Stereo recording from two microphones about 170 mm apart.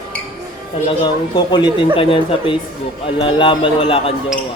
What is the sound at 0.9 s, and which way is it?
A man's voice, 25° left (ahead or behind).